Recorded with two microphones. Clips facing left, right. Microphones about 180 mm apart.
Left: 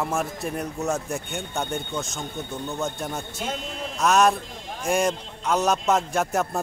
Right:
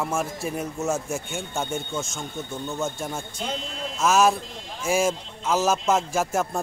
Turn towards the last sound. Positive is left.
turn(degrees=0)  # may be behind; listen again after turning